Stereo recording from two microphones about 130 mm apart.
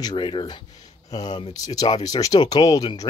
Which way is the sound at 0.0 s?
35° left (ahead or behind).